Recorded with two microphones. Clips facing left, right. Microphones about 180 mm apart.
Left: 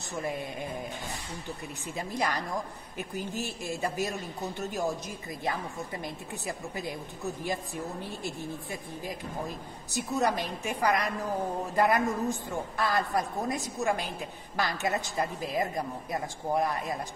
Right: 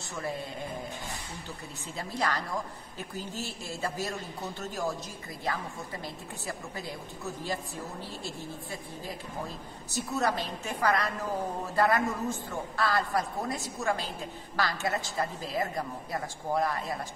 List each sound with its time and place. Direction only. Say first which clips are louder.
2.0 s a man's voice: left 1 dB; 15° left (ahead or behind)
8.0 s a man's voice: left 3 dB; 15° left (ahead or behind)
9.9 s a man's voice: left 1 dB; 15° left (ahead or behind)